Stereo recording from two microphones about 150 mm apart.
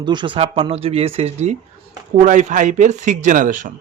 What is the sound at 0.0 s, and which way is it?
Speech, 30° right (ahead or behind).